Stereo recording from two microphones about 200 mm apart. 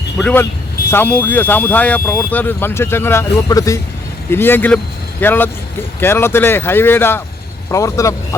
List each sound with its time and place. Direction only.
0.2 s speech: 5° left (ahead or behind)